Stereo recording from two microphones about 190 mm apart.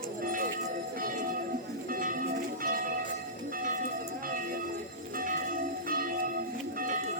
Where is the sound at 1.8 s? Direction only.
45° right (ahead or behind).